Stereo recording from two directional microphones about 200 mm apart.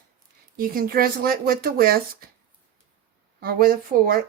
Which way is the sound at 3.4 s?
45° right (ahead or behind).